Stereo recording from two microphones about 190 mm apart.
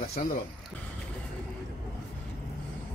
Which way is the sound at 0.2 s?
40° left (ahead or behind).